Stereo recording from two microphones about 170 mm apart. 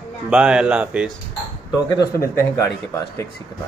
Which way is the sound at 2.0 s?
15° left (ahead or behind).